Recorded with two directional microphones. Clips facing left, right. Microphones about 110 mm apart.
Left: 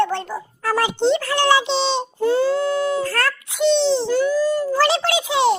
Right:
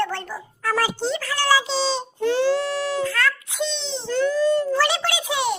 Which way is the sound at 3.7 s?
35° left (ahead or behind).